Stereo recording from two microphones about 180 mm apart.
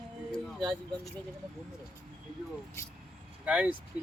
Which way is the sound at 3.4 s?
5° right (ahead or behind).